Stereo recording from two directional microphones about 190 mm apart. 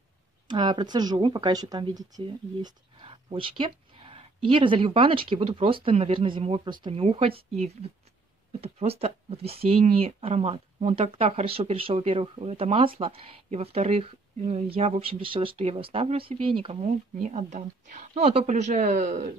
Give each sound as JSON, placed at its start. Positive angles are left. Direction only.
{"t": 0.5, "sound": "speech", "side_deg": -25}